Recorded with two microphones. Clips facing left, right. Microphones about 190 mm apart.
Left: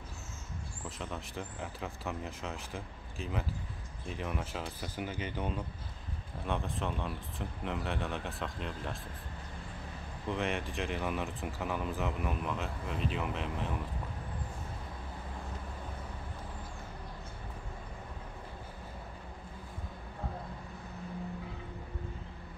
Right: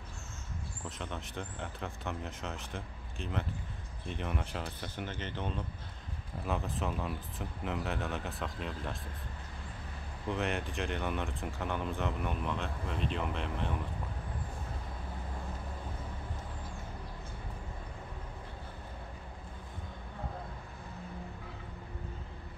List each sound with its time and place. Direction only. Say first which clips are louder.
0.8 s speech: left 1 dB; centre (ahead or behind)
6.4 s speech: even; centre (ahead or behind)
10.2 s speech: even; centre (ahead or behind)